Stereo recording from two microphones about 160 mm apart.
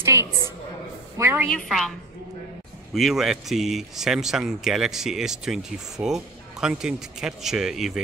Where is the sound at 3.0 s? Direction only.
Centre (ahead or behind).